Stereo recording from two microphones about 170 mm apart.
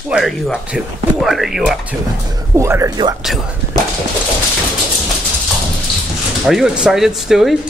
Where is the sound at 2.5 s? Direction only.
15° right (ahead or behind).